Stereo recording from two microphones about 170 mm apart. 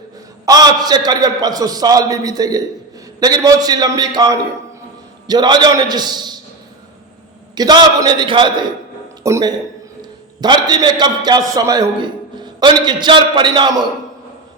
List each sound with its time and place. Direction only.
0.4 s a man's voice: 20° right (ahead or behind)
7.5 s a man's voice: 25° right (ahead or behind)